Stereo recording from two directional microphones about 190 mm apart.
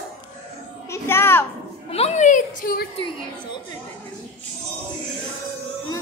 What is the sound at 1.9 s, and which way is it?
Speech, 35° left (ahead or behind).